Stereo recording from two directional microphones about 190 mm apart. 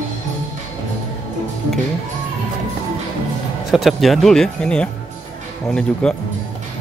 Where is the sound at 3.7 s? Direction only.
Centre (ahead or behind).